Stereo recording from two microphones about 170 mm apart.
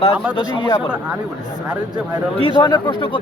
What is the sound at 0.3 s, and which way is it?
Speech, 30° left (ahead or behind).